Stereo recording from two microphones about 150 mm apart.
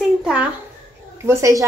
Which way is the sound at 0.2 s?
5° right (ahead or behind).